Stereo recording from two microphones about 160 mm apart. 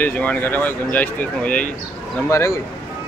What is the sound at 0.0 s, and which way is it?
Speech, 10° left (ahead or behind).